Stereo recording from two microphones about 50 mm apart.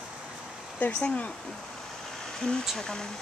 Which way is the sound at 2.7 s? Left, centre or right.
Centre.